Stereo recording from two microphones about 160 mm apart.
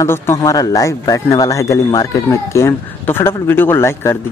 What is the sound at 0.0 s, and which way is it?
Speech, 20° left (ahead or behind).